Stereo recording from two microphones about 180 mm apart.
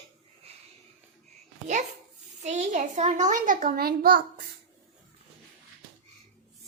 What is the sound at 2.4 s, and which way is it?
A child's voice, 40° right (ahead or behind).